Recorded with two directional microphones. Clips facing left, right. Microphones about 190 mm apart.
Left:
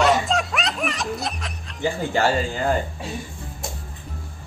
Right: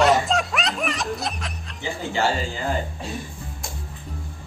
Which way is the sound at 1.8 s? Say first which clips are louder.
Left 3 dB; 50° left (ahead or behind).